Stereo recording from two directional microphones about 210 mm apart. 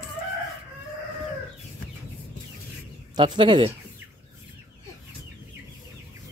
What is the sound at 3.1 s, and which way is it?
Speech, 20° right (ahead or behind).